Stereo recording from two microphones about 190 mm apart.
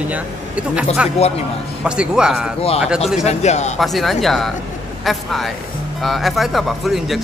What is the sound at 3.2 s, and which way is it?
Speech, 35° left (ahead or behind).